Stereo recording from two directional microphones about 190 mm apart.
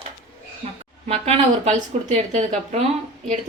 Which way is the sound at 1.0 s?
35° right (ahead or behind).